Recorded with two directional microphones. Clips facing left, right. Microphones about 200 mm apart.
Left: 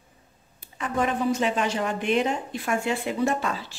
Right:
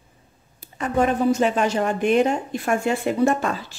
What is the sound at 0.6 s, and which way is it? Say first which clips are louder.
Speech: right 5 dB; 40° right (ahead or behind).